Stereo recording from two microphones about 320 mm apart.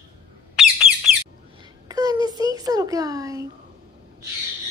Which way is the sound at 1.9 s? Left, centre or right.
Centre.